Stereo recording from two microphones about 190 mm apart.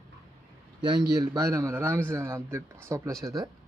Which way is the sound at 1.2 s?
20° right (ahead or behind).